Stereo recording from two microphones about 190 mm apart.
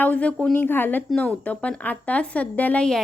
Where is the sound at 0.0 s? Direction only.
10° left (ahead or behind).